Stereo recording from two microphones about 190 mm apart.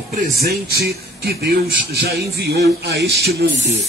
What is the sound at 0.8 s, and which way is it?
A man's voice, 55° right (ahead or behind).